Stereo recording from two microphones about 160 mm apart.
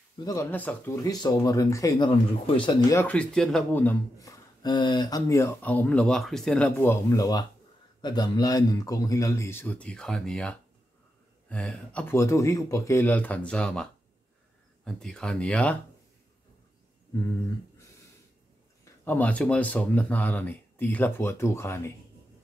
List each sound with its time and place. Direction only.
0.2 s speech: 20° left (ahead or behind)
1.0 s speech: 25° left (ahead or behind)
2.9 s speech: 10° left (ahead or behind)
14.9 s speech: 5° left (ahead or behind)
19.0 s speech: 10° left (ahead or behind)